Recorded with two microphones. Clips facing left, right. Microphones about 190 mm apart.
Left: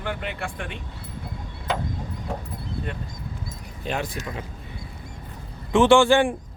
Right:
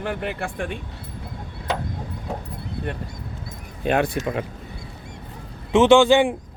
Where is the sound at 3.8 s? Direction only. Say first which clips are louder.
Right 8 dB; 60° right (ahead or behind).